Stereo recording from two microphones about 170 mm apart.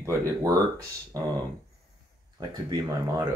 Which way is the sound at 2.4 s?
20° right (ahead or behind).